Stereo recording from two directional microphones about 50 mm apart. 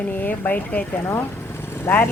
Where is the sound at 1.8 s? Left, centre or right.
Left.